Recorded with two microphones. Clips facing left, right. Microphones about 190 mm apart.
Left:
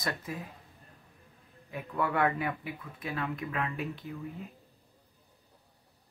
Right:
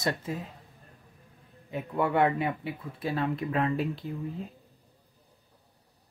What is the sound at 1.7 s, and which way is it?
Speech, 25° right (ahead or behind).